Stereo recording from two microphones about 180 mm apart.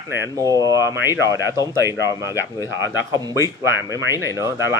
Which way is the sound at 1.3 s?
20° left (ahead or behind).